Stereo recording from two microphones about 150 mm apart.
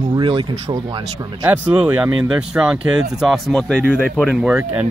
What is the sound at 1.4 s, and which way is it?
Speech, 15° right (ahead or behind).